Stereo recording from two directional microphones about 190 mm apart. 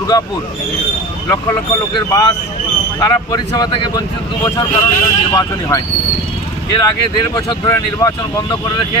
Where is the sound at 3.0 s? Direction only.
20° left (ahead or behind).